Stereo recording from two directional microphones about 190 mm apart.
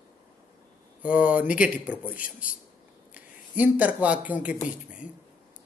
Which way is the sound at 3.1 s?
10° right (ahead or behind).